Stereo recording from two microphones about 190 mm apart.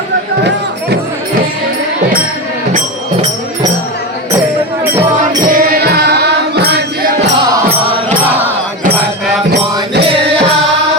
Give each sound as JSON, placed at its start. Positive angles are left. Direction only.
{"t": 5.5, "sound": "music", "side_deg": -50}